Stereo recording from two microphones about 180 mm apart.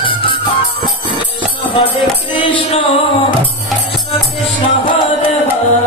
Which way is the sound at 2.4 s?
25° left (ahead or behind).